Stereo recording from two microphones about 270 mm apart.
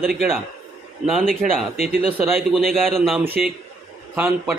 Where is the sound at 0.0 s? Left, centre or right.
Centre.